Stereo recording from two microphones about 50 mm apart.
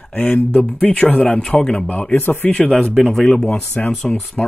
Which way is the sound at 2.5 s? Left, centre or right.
Left.